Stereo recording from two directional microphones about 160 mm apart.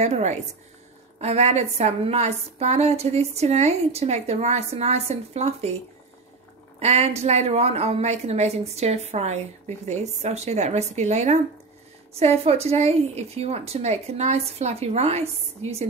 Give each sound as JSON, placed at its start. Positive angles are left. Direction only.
{"t": 0.0, "sound": "a woman's voice", "side_deg": -45}
{"t": 6.8, "sound": "a woman's voice", "side_deg": -40}